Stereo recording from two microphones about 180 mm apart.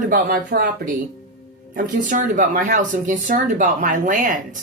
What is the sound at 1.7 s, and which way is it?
Speech, 50° right (ahead or behind).